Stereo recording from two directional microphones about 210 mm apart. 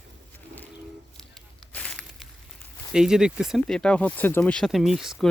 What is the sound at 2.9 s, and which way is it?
Speech, 5° right (ahead or behind).